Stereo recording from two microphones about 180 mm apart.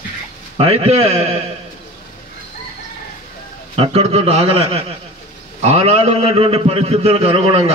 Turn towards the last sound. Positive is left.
turn(degrees=-35)  # may be behind; listen again after turning